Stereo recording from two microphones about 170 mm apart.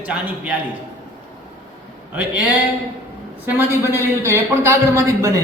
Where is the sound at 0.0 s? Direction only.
5° right (ahead or behind).